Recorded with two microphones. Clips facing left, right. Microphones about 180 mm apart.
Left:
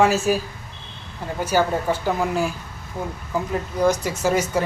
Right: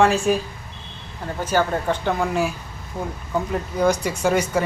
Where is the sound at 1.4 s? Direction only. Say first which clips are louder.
Left 1 dB; 10° left (ahead or behind).